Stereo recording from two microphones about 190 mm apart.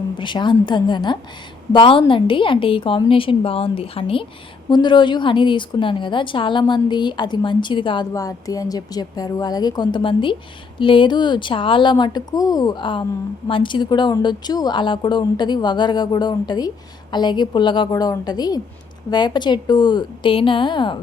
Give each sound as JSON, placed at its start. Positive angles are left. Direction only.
{"t": 0.2, "sound": "a woman's voice", "side_deg": 25}